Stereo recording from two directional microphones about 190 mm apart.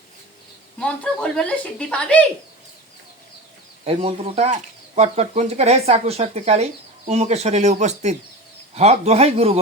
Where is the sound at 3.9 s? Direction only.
30° right (ahead or behind).